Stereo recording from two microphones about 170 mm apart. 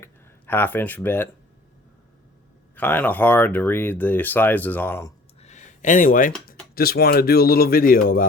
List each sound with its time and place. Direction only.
0.0 s speech: 10° left (ahead or behind)
2.7 s speech: 10° left (ahead or behind)
5.4 s a sound: 45° left (ahead or behind)
6.7 s speech: 65° left (ahead or behind)